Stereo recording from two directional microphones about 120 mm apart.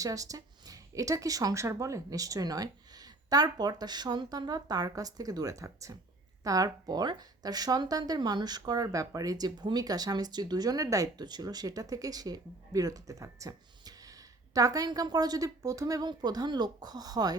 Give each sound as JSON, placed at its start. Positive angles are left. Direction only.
{"t": 0.0, "sound": "speech", "side_deg": -30}